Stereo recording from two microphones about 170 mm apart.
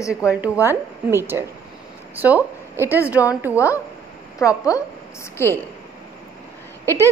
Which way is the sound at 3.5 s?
15° left (ahead or behind).